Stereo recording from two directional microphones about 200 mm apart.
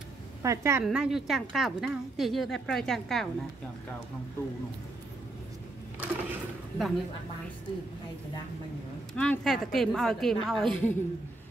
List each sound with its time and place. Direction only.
0.4 s a woman's voice: 15° right (ahead or behind)
0.8 s speech: 5° right (ahead or behind)
5.9 s drawer open or close: 5° right (ahead or behind)
9.1 s speech: 5° left (ahead or behind)